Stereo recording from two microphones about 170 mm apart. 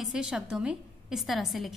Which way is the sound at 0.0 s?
5° right (ahead or behind).